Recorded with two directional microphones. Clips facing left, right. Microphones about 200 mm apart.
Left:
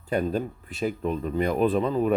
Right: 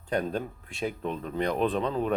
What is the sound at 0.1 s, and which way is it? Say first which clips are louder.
A man's voice: left 3 dB; 5° left (ahead or behind).